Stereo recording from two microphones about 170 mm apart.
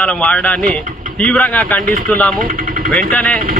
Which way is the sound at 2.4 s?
55° right (ahead or behind).